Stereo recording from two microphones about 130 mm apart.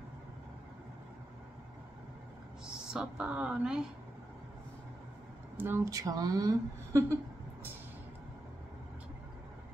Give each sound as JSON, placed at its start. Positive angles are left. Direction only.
{"t": 2.9, "sound": "speech", "side_deg": -5}
{"t": 5.6, "sound": "speech", "side_deg": -20}